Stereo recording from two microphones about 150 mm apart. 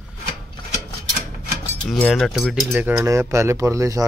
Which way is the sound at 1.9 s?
5° left (ahead or behind).